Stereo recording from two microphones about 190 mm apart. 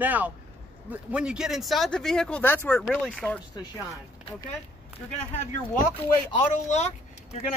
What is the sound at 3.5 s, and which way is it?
Speech, 20° left (ahead or behind).